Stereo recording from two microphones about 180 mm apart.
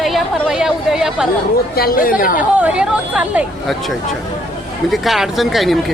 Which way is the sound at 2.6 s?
5° right (ahead or behind).